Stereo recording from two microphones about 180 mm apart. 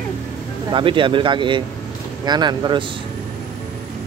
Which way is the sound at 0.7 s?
25° right (ahead or behind).